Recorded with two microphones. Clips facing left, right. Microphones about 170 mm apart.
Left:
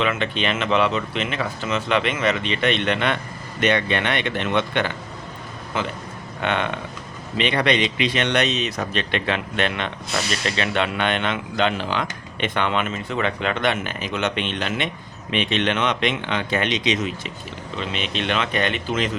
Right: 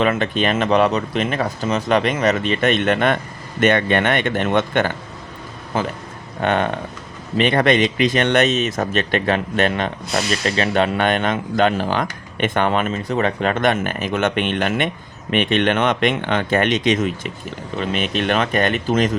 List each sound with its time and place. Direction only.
0.0 s speech: 45° right (ahead or behind)
6.4 s speech: 40° right (ahead or behind)